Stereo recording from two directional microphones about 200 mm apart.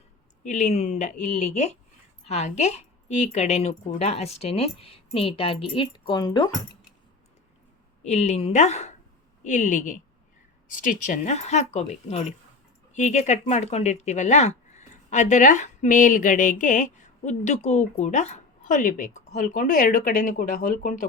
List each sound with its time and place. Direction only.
0.4 s speech: 35° left (ahead or behind); by 6.5 s 20° left (ahead or behind)
8.0 s speech: 35° left (ahead or behind)